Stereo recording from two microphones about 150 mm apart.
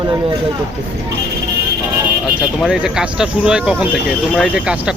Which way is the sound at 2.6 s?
5° right (ahead or behind).